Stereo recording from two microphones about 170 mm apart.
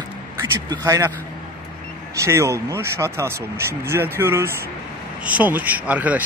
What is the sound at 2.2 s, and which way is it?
Speech, 15° right (ahead or behind).